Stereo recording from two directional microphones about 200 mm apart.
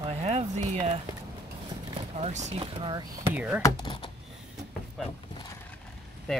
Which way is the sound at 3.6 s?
20° left (ahead or behind).